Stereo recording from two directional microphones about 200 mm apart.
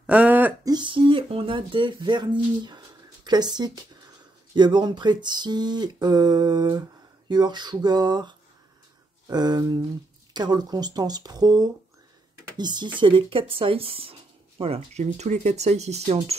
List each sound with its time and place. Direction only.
0.0 s throat clearing: 5° right (ahead or behind)
0.7 s speech: 25° right (ahead or behind)